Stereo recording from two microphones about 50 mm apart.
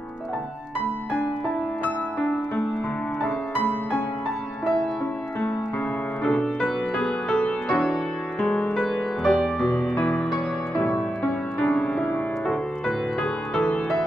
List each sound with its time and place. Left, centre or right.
6.2 s music: centre
9.6 s music: left
12.4 s music: centre